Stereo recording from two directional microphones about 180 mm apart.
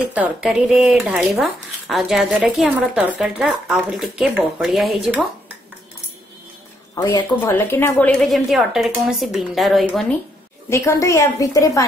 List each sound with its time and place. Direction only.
0.1 s speech: 5° right (ahead or behind)
7.0 s a woman's voice: 15° left (ahead or behind); by 10.0 s centre (ahead or behind)
10.7 s a woman's voice: 15° left (ahead or behind)